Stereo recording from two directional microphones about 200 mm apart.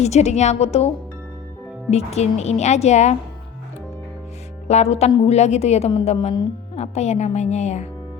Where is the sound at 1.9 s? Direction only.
30° left (ahead or behind).